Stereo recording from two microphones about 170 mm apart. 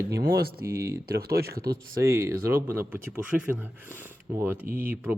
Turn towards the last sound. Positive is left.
turn(degrees=-55)  # may be behind; listen again after turning